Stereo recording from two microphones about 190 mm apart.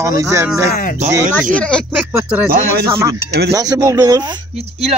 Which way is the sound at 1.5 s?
5° left (ahead or behind).